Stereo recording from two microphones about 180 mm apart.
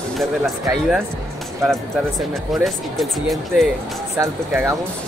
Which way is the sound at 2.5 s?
Centre (ahead or behind).